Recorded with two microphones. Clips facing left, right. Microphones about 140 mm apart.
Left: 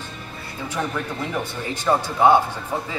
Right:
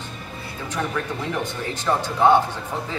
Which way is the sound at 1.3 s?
10° left (ahead or behind).